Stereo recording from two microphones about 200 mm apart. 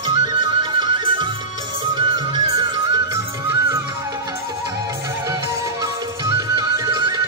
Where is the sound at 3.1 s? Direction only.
10° right (ahead or behind).